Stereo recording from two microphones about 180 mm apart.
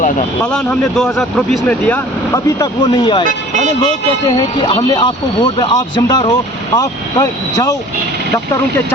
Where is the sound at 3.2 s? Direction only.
40° right (ahead or behind).